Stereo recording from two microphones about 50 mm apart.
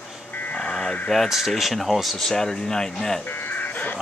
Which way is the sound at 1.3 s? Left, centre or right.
Centre.